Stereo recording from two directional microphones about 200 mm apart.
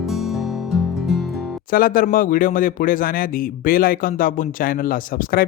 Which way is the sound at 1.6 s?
45° left (ahead or behind).